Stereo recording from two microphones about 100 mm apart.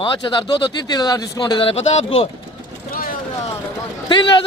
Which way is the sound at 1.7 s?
90° left.